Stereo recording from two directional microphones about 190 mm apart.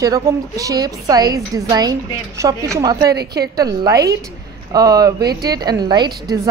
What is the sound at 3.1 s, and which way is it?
Speech, 60° right (ahead or behind).